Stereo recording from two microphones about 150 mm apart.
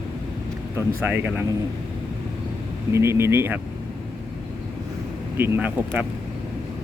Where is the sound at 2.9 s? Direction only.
15° right (ahead or behind).